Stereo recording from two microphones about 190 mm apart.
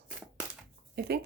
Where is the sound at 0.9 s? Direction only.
55° right (ahead or behind).